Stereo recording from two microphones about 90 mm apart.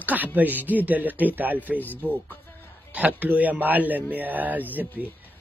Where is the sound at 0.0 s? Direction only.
20° right (ahead or behind).